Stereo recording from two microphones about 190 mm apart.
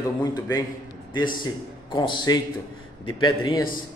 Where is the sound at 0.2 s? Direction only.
20° left (ahead or behind).